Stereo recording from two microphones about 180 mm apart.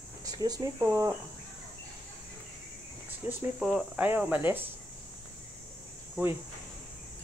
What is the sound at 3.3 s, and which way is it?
Speech, 5° right (ahead or behind).